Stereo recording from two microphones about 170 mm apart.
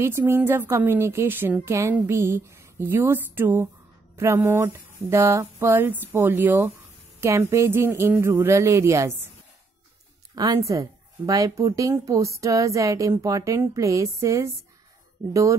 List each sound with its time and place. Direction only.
0.0 s a woman's voice: 15° right (ahead or behind)
10.3 s speech: 20° right (ahead or behind)